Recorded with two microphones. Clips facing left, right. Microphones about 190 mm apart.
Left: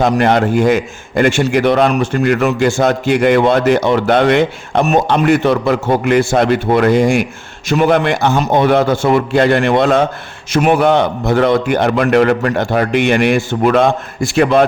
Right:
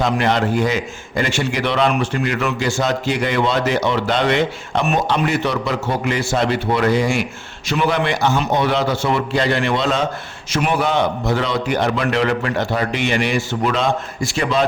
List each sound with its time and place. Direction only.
0.0 s a man's voice: 50° left (ahead or behind)